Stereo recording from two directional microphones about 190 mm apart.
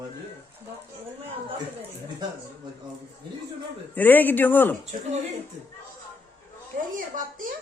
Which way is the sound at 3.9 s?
10° left (ahead or behind).